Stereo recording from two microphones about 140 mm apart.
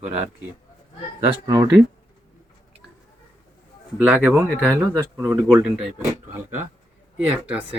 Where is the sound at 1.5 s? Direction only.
25° right (ahead or behind).